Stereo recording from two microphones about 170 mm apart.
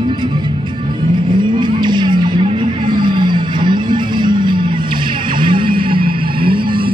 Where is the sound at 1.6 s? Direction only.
25° right (ahead or behind).